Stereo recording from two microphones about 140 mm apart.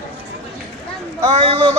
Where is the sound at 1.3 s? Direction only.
45° right (ahead or behind).